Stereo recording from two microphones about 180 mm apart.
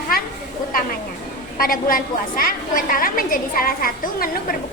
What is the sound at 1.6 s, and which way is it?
A woman's voice, 50° left (ahead or behind).